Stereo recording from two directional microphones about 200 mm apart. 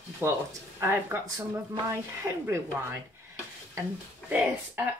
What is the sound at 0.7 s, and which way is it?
Speech, 15° right (ahead or behind).